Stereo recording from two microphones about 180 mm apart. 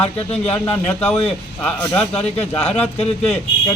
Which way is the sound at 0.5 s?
10° left (ahead or behind).